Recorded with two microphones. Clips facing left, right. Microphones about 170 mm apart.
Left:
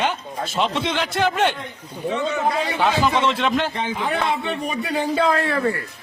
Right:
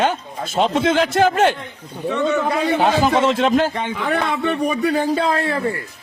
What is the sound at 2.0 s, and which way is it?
Speech, 65° right (ahead or behind).